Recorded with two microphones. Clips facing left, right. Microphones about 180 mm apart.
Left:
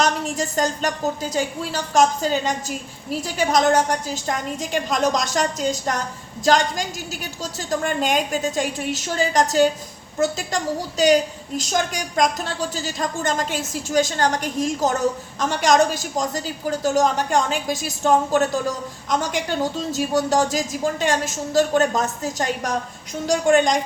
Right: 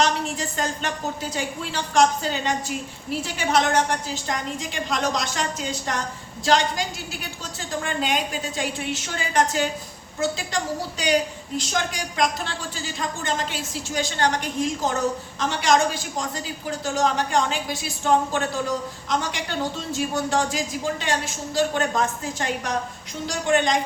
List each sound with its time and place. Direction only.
0.0 s a woman's voice: 40° left (ahead or behind)